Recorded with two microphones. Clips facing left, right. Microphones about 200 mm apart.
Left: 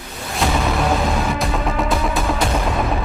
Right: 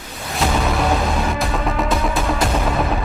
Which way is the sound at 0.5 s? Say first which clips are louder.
Even; centre (ahead or behind).